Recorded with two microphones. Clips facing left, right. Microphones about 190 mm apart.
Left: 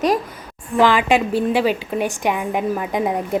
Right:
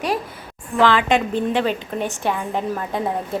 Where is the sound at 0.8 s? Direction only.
10° left (ahead or behind).